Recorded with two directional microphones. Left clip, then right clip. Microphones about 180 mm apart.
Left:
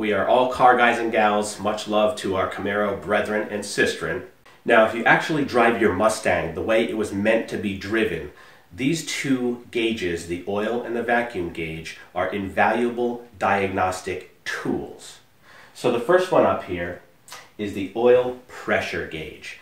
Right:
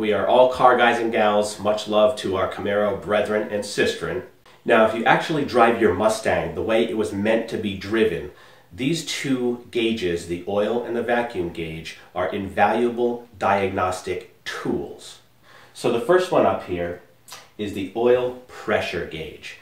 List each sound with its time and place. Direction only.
0.0 s speech: 15° left (ahead or behind)
15.8 s speech: 15° left (ahead or behind)